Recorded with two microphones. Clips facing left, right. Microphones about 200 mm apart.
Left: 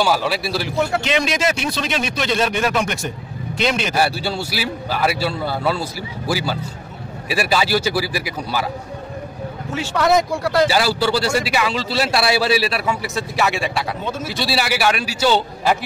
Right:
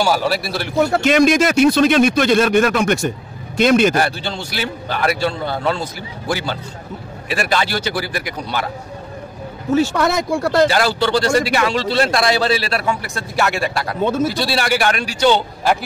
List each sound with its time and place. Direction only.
0.0 s a man's voice: centre (ahead or behind)
0.9 s speech: 45° right (ahead or behind)
3.9 s a man's voice: 10° left (ahead or behind)
9.8 s speech: 50° right (ahead or behind)
10.7 s a man's voice: 5° left (ahead or behind)